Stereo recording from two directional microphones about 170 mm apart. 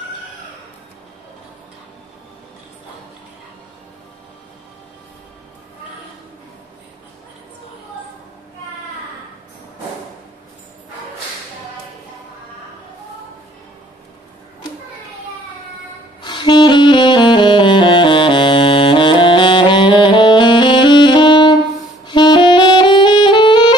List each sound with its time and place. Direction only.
16.2 s saxophone: 25° left (ahead or behind)